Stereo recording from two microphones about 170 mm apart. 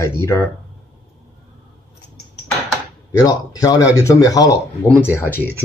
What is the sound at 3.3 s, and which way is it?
Speech, 20° left (ahead or behind).